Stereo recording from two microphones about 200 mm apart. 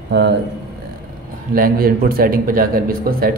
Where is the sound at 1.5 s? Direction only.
45° right (ahead or behind).